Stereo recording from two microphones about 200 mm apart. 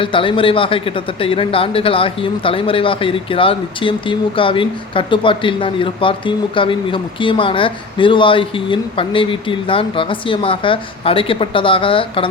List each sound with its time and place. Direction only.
0.0 s a man's voice: 25° left (ahead or behind)